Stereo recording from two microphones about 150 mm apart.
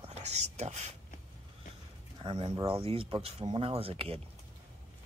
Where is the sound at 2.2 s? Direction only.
35° right (ahead or behind).